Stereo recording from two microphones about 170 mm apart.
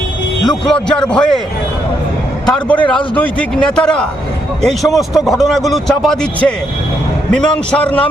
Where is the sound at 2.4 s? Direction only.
5° left (ahead or behind).